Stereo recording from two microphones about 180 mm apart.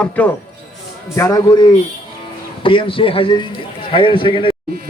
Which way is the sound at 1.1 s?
20° left (ahead or behind).